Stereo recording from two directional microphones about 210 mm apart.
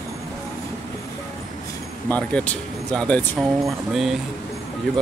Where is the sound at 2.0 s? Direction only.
5° left (ahead or behind).